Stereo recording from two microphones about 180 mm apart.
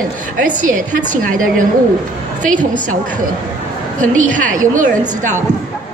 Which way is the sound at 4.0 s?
45° right (ahead or behind).